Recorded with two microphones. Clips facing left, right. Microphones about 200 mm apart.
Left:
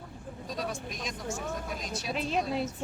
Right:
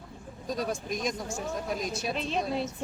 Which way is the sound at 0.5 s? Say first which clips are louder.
Right 5 dB; 45° right (ahead or behind).